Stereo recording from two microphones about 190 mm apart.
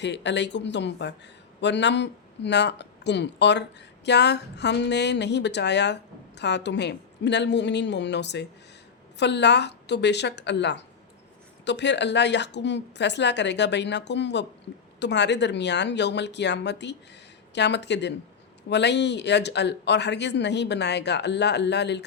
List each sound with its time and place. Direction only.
0.0 s speech: 65° left (ahead or behind)